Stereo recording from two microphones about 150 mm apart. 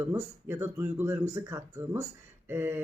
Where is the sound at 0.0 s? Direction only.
15° right (ahead or behind).